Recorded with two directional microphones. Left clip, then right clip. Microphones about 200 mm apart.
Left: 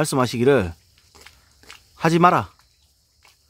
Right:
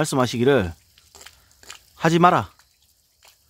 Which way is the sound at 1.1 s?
35° right (ahead or behind).